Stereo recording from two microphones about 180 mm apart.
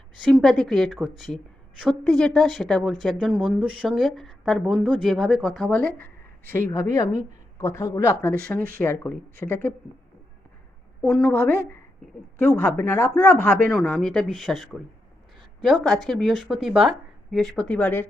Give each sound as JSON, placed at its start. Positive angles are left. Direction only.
{"t": 0.3, "sound": "speech", "side_deg": 0}
{"t": 11.0, "sound": "speech", "side_deg": 5}